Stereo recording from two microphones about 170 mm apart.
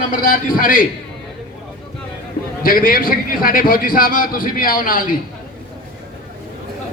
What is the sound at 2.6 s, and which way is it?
A man's voice, 55° left (ahead or behind).